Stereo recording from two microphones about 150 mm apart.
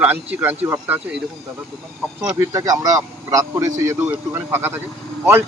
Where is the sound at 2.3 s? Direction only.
20° right (ahead or behind).